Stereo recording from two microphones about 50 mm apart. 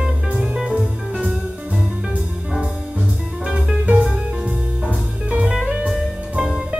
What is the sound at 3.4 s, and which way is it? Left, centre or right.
Music, centre.